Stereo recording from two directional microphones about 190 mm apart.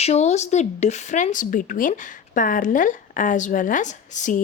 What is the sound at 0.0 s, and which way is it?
Speech, 35° left (ahead or behind).